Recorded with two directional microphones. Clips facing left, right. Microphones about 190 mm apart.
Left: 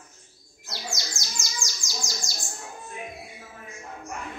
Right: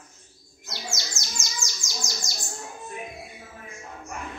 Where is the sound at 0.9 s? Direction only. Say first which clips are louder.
Even; 25° right (ahead or behind).